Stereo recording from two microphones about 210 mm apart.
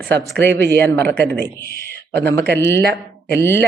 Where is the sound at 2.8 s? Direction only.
50° right (ahead or behind).